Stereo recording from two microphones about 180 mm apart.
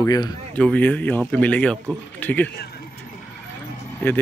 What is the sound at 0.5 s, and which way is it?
Speech, 10° left (ahead or behind).